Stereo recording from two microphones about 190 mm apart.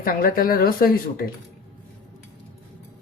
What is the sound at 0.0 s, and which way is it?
Speech, 50° left (ahead or behind).